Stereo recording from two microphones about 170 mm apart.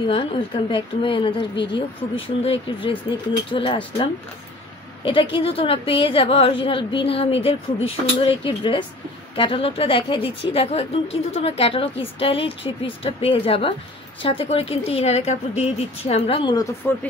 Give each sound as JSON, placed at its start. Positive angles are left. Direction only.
{"t": 0.1, "sound": "a woman's voice", "side_deg": 30}
{"t": 16.5, "sound": "speech", "side_deg": 10}